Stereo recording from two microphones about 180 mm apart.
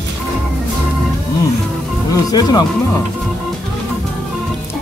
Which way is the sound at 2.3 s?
25° left (ahead or behind).